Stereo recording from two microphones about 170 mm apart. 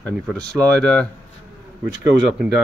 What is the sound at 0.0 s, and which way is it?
Speech, 5° left (ahead or behind).